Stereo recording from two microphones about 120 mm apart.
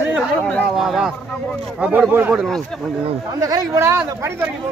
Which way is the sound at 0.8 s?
5° right (ahead or behind).